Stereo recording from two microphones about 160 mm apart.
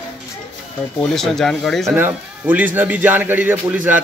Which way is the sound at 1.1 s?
5° left (ahead or behind).